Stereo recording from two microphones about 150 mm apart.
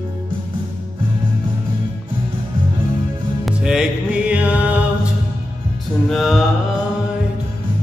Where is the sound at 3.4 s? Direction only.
5° right (ahead or behind).